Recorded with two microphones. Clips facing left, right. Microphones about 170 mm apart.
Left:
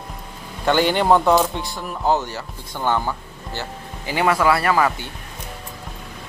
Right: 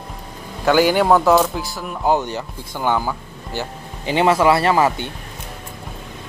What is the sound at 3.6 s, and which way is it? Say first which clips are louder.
Speech: right 4 dB; 20° right (ahead or behind).